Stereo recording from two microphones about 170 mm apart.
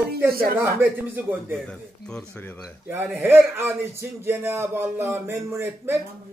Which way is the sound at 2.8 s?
10° right (ahead or behind).